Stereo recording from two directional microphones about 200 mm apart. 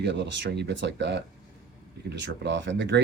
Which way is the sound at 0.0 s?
60° right (ahead or behind).